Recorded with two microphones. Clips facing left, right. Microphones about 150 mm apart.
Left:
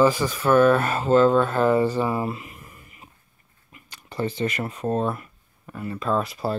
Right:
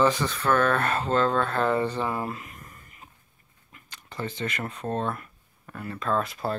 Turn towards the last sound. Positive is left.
turn(degrees=5)  # may be behind; listen again after turning